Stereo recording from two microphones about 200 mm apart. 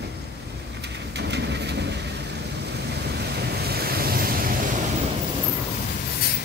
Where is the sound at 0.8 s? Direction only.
55° right (ahead or behind).